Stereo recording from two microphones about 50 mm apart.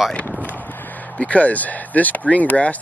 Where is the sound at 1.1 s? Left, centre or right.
Left.